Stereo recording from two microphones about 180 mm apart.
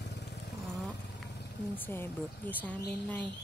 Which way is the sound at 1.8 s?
10° left (ahead or behind).